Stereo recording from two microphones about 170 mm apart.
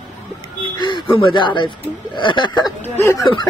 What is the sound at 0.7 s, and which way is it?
Speech, 30° left (ahead or behind).